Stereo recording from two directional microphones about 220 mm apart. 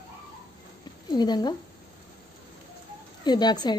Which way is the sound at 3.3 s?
20° left (ahead or behind).